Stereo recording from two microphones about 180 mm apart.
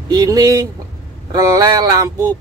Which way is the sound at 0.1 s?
20° right (ahead or behind).